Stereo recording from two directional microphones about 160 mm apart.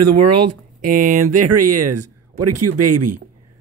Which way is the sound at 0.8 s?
55° right (ahead or behind).